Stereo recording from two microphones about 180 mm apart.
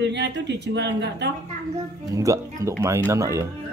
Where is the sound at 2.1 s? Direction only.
20° right (ahead or behind).